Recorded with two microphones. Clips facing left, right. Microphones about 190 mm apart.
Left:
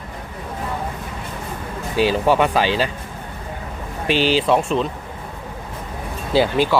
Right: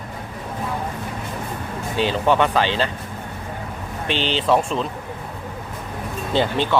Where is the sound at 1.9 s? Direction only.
10° left (ahead or behind).